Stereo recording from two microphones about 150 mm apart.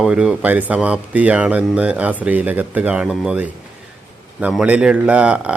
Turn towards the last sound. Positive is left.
turn(degrees=-10)  # may be behind; listen again after turning